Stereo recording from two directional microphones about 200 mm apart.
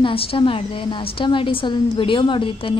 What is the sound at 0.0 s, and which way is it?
A woman's voice, 30° left (ahead or behind).